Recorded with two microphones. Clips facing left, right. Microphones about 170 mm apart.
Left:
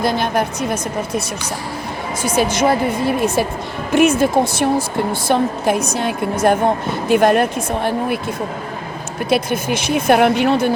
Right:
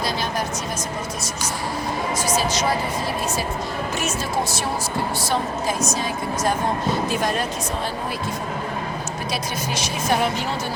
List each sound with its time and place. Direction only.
0.0 s a woman's voice: 55° left (ahead or behind)
2.2 s a woman's voice: 55° left (ahead or behind)
9.3 s a woman's voice: 55° left (ahead or behind)